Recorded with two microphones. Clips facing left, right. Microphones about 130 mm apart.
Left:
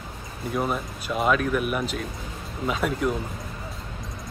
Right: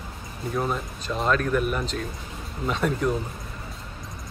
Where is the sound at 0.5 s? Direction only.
5° left (ahead or behind).